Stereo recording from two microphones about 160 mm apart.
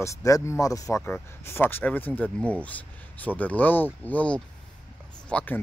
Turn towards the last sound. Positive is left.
turn(degrees=10)  # may be behind; listen again after turning